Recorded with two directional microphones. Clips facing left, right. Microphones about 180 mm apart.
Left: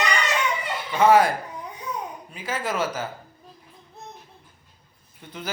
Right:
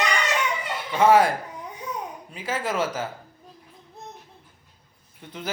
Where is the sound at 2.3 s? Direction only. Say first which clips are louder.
Right 1 dB; 25° right (ahead or behind).